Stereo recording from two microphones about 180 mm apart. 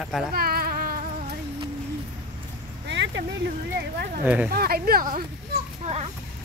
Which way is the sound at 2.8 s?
80° right.